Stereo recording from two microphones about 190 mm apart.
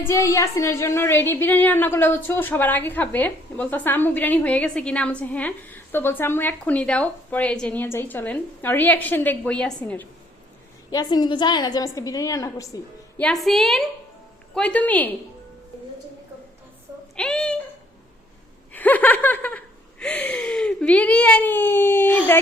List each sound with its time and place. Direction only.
0.1 s speech: 15° left (ahead or behind)
10.9 s a woman's voice: 20° left (ahead or behind)
13.2 s a woman's voice: centre (ahead or behind)
17.2 s a woman's voice: 5° left (ahead or behind)
18.7 s speech: 10° left (ahead or behind)